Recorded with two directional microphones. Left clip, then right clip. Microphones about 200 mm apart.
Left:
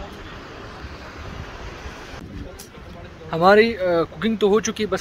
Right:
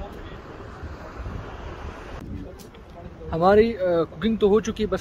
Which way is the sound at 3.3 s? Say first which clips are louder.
Left 3 dB; 5° left (ahead or behind).